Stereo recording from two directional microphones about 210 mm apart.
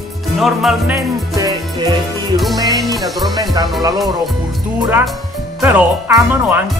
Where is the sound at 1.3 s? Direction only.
15° right (ahead or behind).